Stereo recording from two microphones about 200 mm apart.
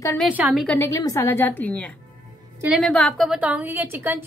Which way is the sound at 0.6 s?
10° left (ahead or behind).